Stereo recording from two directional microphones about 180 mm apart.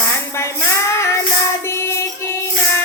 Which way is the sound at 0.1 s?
15° left (ahead or behind).